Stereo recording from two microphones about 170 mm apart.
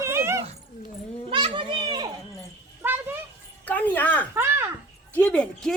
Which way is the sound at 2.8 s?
10° right (ahead or behind).